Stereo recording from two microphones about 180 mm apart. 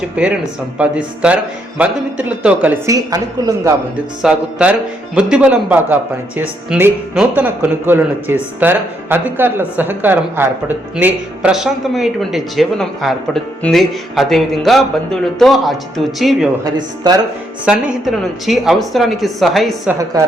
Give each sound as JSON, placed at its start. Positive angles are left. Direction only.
{"t": 0.2, "sound": "speech", "side_deg": -5}
{"t": 4.2, "sound": "speech", "side_deg": -5}
{"t": 16.6, "sound": "speech", "side_deg": -20}
{"t": 17.7, "sound": "speech", "side_deg": -5}
{"t": 19.9, "sound": "speech", "side_deg": -15}